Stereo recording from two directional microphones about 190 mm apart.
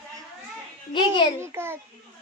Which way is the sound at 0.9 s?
25° left (ahead or behind).